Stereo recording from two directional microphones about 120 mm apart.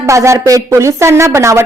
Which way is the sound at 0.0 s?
25° right (ahead or behind).